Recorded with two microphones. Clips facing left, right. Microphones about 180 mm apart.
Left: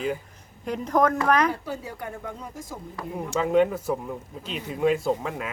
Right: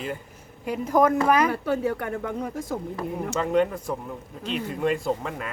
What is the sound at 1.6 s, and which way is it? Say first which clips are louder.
Speech: right 8 dB; 60° right (ahead or behind).